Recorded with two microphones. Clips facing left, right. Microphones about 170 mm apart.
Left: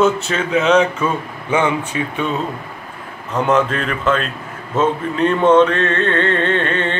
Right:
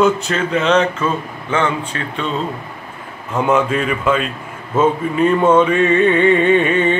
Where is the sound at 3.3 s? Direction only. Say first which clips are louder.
Right 1 dB; 10° right (ahead or behind).